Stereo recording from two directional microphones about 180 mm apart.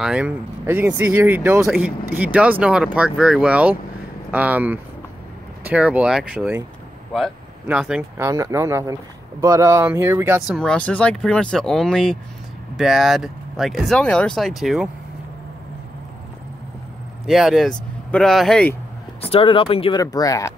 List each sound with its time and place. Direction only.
0.0 s speech: 5° right (ahead or behind)
7.6 s speech: 5° right (ahead or behind)
8.2 s speech: 15° right (ahead or behind)
10.5 s speech: 5° left (ahead or behind)
17.3 s speech: centre (ahead or behind)
19.2 s speech: 30° left (ahead or behind)
20.0 s speech: 20° left (ahead or behind)